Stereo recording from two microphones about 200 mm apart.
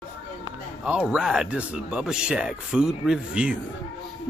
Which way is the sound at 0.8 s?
5° right (ahead or behind).